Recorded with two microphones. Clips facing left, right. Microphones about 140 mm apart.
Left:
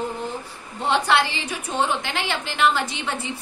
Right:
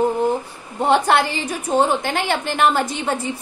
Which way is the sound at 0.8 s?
50° right (ahead or behind).